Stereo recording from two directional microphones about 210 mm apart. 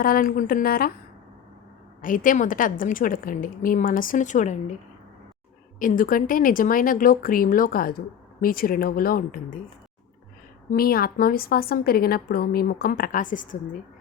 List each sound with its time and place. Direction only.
0.0 s a woman's voice: 40° left (ahead or behind)
2.0 s speech: 40° left (ahead or behind)
5.8 s speech: 40° left (ahead or behind)
10.7 s a woman's voice: 45° left (ahead or behind)